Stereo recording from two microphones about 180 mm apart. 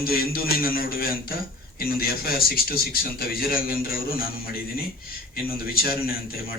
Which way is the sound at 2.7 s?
55° left (ahead or behind).